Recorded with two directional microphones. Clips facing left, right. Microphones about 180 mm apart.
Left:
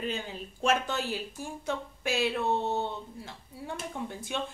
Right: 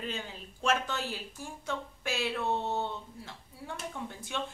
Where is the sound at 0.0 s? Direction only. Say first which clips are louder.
Left 4 dB; 15° left (ahead or behind).